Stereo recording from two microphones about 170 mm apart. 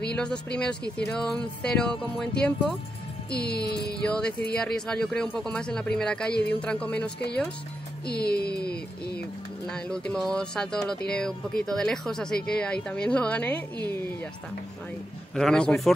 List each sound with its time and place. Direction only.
0.1 s speech: 5° left (ahead or behind)
3.3 s a sound: 70° left (ahead or behind)
4.0 s a woman's voice: 5° left (ahead or behind)
8.1 s a sound: 70° left (ahead or behind)
9.7 s a woman's voice: 5° left (ahead or behind)
15.3 s speech: 5° left (ahead or behind)